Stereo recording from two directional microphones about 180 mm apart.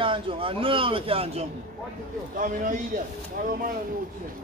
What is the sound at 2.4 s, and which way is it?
Speech, 50° right (ahead or behind).